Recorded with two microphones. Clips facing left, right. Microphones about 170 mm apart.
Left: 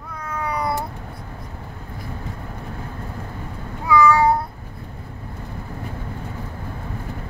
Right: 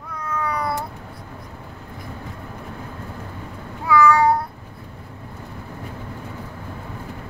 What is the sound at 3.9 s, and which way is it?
Meow, 20° left (ahead or behind).